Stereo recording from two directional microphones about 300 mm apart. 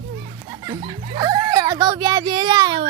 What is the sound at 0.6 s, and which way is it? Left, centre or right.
A child's voice, centre.